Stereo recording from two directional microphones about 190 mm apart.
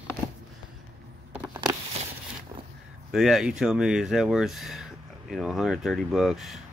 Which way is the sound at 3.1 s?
Centre (ahead or behind).